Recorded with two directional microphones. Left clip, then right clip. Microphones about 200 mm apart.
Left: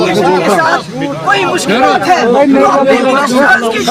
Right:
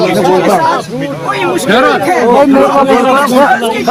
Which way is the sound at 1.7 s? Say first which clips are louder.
Right 2 dB; 35° right (ahead or behind).